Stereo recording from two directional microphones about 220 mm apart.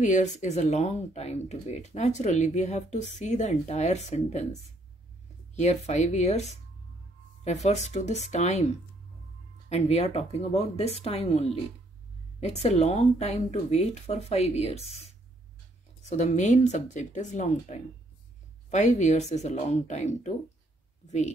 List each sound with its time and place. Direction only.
0.0 s speech: 35° left (ahead or behind)
5.6 s speech: 30° left (ahead or behind)
7.6 s speech: 30° left (ahead or behind)
16.1 s speech: 30° left (ahead or behind)